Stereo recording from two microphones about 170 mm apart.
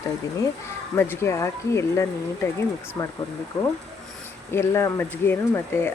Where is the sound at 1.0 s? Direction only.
15° left (ahead or behind).